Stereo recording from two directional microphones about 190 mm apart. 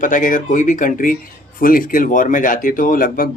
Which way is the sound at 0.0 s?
45° left (ahead or behind).